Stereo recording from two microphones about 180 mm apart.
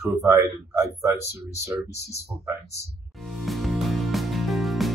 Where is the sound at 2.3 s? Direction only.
25° right (ahead or behind).